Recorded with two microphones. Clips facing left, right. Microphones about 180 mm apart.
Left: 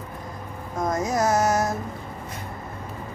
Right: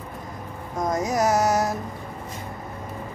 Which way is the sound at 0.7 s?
15° right (ahead or behind).